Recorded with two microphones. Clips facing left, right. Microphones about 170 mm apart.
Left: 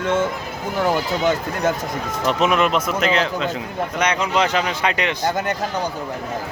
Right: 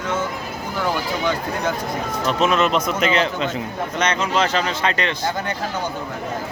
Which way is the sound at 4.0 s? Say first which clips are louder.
Even; 15° left (ahead or behind).